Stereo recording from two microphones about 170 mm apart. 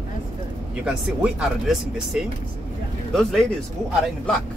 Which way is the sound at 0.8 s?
5° right (ahead or behind).